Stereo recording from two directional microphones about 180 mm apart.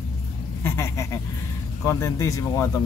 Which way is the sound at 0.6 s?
15° left (ahead or behind).